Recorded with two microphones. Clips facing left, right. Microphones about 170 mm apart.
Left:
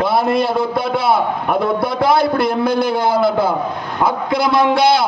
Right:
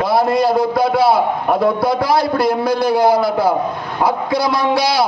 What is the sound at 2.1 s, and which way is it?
A man's voice, 25° left (ahead or behind).